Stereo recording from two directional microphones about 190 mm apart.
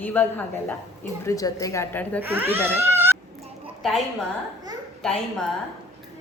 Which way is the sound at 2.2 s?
10° right (ahead or behind).